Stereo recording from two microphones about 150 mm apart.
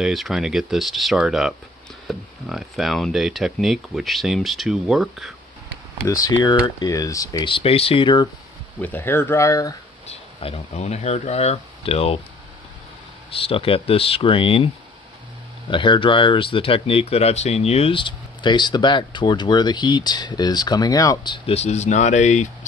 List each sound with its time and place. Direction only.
0.0 s speech: centre (ahead or behind)
6.0 s speech: 20° left (ahead or behind)
7.4 s speech: 40° left (ahead or behind)
8.8 s speech: 15° left (ahead or behind)
10.0 s speech: 45° left (ahead or behind)
13.3 s speech: 40° left (ahead or behind)
15.7 s speech: 35° left (ahead or behind)
21.5 s speech: 50° left (ahead or behind)